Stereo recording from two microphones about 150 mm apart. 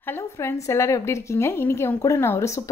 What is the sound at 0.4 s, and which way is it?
A woman's voice, 20° left (ahead or behind).